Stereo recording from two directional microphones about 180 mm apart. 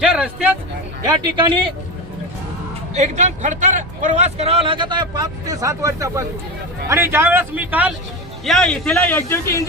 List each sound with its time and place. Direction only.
0.0 s speech: 5° right (ahead or behind)
1.0 s a man's voice: 25° right (ahead or behind)
2.9 s a man's voice: 40° right (ahead or behind); by 7.9 s 10° right (ahead or behind)
8.4 s a man's voice: 5° left (ahead or behind)